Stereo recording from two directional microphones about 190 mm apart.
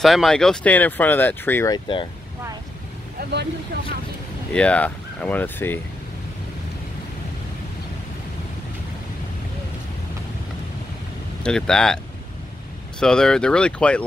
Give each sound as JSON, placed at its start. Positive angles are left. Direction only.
{"t": 0.0, "sound": "speech", "side_deg": 0}
{"t": 3.2, "sound": "vehicle", "side_deg": -60}
{"t": 4.6, "sound": "speech", "side_deg": 5}
{"t": 11.4, "sound": "speech", "side_deg": 5}
{"t": 13.0, "sound": "speech", "side_deg": 5}